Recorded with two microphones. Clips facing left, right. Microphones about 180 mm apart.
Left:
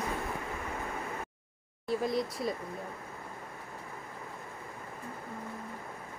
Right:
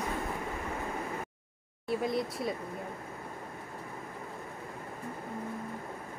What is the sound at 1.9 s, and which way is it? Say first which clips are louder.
Speech: even; 5° right (ahead or behind).